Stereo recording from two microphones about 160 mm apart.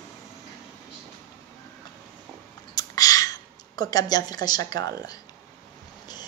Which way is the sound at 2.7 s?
20° left (ahead or behind).